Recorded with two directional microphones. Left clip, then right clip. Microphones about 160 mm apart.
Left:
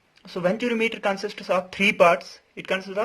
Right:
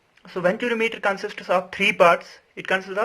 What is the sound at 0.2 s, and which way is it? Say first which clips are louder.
Speech: right 2 dB; 40° left (ahead or behind).